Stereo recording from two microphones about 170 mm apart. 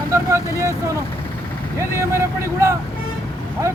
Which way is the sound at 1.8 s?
15° right (ahead or behind).